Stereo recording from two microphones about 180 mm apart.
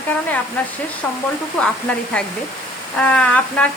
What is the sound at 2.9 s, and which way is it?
Speech, 5° left (ahead or behind).